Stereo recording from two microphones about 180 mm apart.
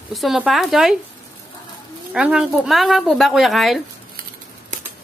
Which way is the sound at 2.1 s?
5° right (ahead or behind).